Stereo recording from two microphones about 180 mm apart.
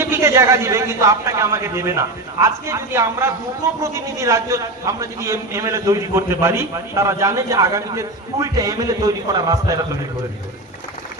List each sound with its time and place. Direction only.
0.0 s a man's voice: 15° right (ahead or behind)